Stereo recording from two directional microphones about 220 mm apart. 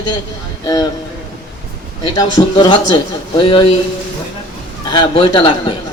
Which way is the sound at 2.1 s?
20° left (ahead or behind).